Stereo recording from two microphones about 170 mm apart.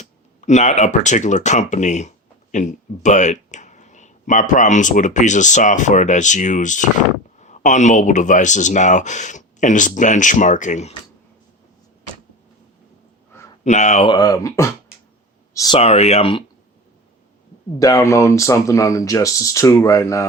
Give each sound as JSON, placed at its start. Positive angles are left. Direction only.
{"t": 0.0, "sound": "speech", "side_deg": 45}
{"t": 13.7, "sound": "speech", "side_deg": 45}
{"t": 14.1, "sound": "speech", "side_deg": 25}
{"t": 15.8, "sound": "speech", "side_deg": 40}
{"t": 17.7, "sound": "speech", "side_deg": 20}